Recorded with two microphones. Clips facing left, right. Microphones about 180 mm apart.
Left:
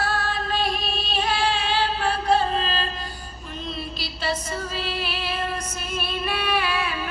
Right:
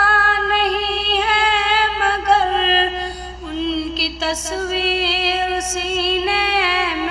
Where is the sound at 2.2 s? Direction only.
90° right.